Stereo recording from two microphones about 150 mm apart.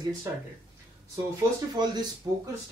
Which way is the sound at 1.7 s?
30° right (ahead or behind).